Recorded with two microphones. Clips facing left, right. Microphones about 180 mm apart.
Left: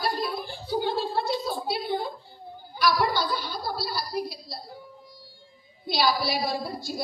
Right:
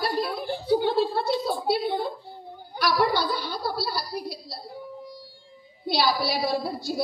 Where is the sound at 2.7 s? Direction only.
65° right (ahead or behind).